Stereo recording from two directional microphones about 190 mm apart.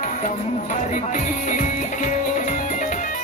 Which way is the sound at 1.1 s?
40° left (ahead or behind).